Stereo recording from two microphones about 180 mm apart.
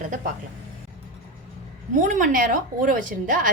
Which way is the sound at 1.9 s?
45° right (ahead or behind).